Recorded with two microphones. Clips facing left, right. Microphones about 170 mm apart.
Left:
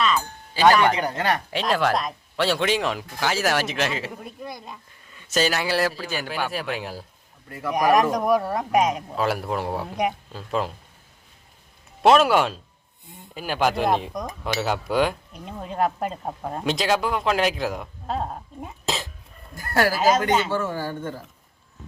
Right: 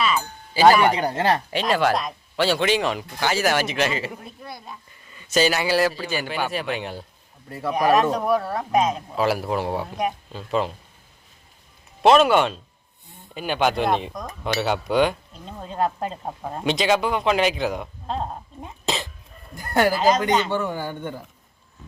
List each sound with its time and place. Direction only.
0.0 s a sound: 5° right (ahead or behind)
0.7 s a man's voice: 5° right (ahead or behind)
0.9 s speech: 30° right (ahead or behind)
1.5 s speech: centre (ahead or behind)
4.4 s speech: 15° left (ahead or behind)
5.0 s speech: centre (ahead or behind)
7.7 s speech: 15° left (ahead or behind)
9.1 s speech: centre (ahead or behind)
12.0 s speech: centre (ahead or behind)
19.5 s speech: 20° right (ahead or behind)
19.9 s speech: 5° left (ahead or behind)
20.5 s a man's voice: 15° right (ahead or behind)